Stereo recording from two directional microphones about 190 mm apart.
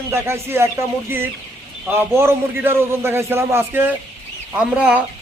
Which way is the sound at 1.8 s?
15° right (ahead or behind).